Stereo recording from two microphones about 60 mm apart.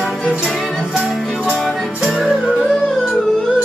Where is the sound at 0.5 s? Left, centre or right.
Centre.